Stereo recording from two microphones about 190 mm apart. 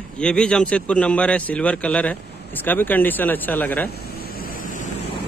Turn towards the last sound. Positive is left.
turn(degrees=45)  # may be behind; listen again after turning